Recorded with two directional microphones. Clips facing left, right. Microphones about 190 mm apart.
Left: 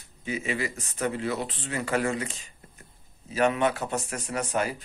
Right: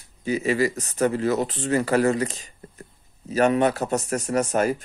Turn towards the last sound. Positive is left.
turn(degrees=-45)  # may be behind; listen again after turning